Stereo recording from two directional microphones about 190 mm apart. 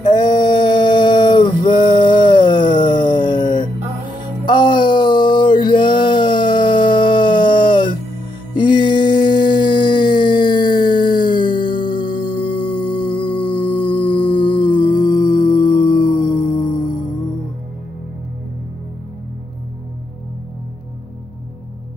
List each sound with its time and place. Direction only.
0.1 s mantra: 20° left (ahead or behind)
4.5 s a sound: 25° left (ahead or behind)
8.5 s music: 25° left (ahead or behind)